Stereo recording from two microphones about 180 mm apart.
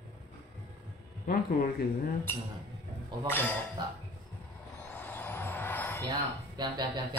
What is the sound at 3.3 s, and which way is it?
Speech, 10° left (ahead or behind).